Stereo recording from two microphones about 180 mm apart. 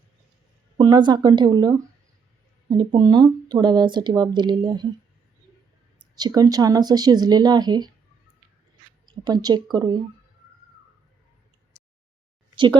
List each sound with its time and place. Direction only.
0.8 s speech: 25° right (ahead or behind)
6.1 s speech: 20° right (ahead or behind)
9.0 s a woman's voice: 25° right (ahead or behind)